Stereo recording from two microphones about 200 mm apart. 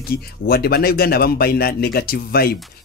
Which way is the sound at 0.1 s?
50° left (ahead or behind).